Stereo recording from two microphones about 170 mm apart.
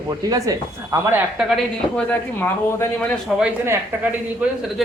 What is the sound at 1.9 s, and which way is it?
Speech, 10° left (ahead or behind).